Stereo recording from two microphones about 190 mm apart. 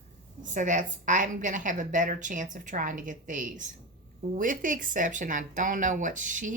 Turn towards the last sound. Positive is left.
turn(degrees=-45)  # may be behind; listen again after turning